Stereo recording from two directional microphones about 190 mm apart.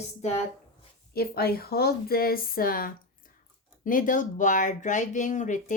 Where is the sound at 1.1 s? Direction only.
55° left (ahead or behind).